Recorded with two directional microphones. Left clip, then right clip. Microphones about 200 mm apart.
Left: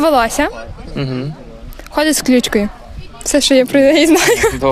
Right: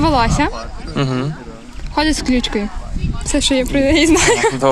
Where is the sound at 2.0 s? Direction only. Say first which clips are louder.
Left 3 dB; 55° left (ahead or behind).